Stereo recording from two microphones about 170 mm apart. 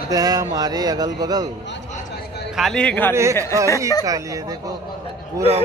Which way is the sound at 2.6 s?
5° left (ahead or behind).